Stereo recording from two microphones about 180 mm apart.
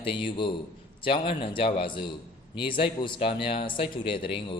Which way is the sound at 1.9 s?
25° left (ahead or behind).